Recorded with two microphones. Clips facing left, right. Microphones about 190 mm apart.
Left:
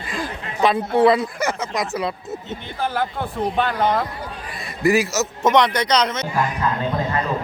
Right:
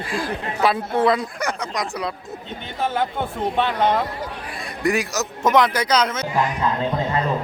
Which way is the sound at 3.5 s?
Centre (ahead or behind).